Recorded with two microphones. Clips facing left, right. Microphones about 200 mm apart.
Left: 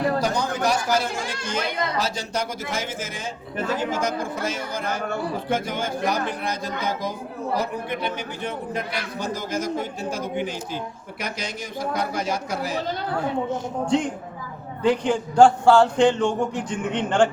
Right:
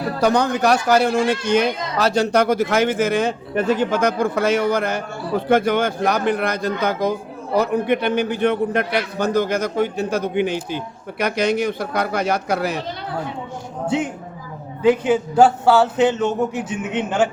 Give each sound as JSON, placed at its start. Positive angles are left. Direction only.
{"t": 0.2, "sound": "speech", "side_deg": -65}
{"t": 13.8, "sound": "a man's voice", "side_deg": -5}